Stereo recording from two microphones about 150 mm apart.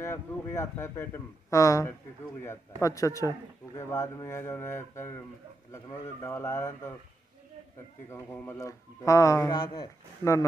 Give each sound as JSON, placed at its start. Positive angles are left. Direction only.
{"t": 0.0, "sound": "a man's voice", "side_deg": 20}
{"t": 8.1, "sound": "a man's voice", "side_deg": 20}